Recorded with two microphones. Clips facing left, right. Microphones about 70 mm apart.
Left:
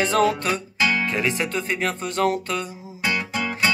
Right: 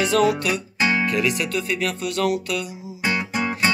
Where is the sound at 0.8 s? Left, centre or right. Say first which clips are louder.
Right 1 dB; right.